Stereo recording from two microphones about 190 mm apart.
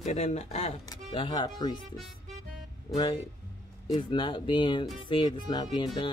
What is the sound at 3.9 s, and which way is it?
Speech, 25° left (ahead or behind).